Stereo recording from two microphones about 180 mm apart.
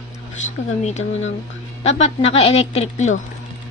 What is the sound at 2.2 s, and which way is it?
A woman's voice, 35° left (ahead or behind).